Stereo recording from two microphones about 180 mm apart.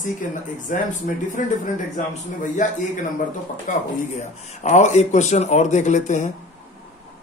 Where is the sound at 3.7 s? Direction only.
45° left (ahead or behind).